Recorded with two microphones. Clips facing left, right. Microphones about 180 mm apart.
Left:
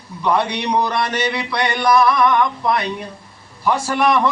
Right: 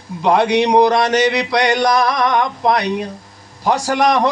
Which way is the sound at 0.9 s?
90° right.